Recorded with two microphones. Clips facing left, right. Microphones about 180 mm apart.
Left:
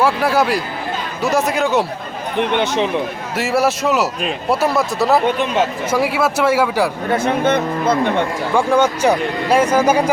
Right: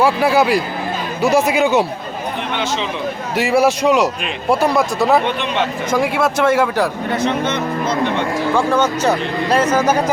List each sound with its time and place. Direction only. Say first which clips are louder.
0.0 s a man's voice: right 2 dB; 5° right (ahead or behind)
2.4 s speech: left 7 dB; 60° left (ahead or behind)
3.3 s a man's voice: right 2 dB; centre (ahead or behind)
7.1 s speech: left 3 dB; 55° left (ahead or behind)
8.5 s speech: left 3 dB; 10° left (ahead or behind)